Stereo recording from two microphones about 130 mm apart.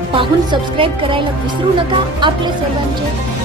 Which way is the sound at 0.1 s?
40° right (ahead or behind).